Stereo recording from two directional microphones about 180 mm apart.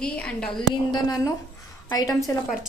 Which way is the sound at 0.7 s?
25° left (ahead or behind).